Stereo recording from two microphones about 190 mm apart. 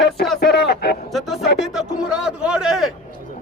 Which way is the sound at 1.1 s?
Centre (ahead or behind).